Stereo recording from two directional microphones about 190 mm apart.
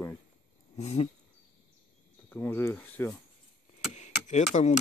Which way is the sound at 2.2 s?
10° left (ahead or behind).